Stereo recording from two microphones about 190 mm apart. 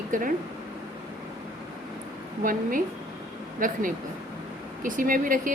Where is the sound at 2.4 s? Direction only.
45° right (ahead or behind).